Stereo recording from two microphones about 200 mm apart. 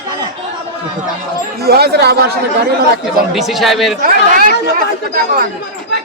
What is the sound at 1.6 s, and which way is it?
Speech, 55° right (ahead or behind).